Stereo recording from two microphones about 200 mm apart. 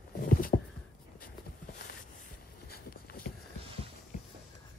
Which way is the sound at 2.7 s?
50° left (ahead or behind).